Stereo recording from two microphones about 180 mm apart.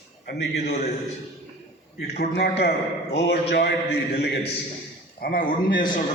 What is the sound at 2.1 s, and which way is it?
A man's voice, 60° left (ahead or behind).